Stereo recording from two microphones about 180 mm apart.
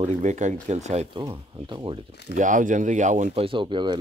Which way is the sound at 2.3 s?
45° right (ahead or behind).